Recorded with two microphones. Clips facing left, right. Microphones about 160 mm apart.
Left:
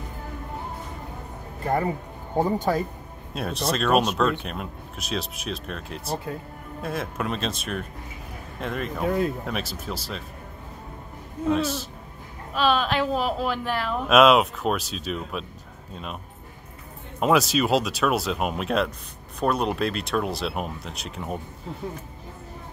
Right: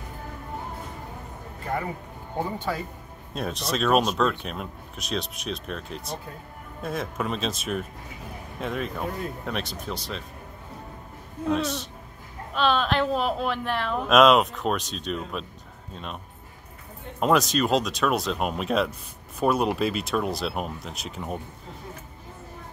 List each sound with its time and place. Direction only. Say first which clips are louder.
2.3 s speech: left 6 dB; 40° left (ahead or behind)
3.3 s speech: left 2 dB; centre (ahead or behind)
11.4 s speech: left 2 dB; centre (ahead or behind)
17.2 s speech: left 1 dB; 5° left (ahead or behind)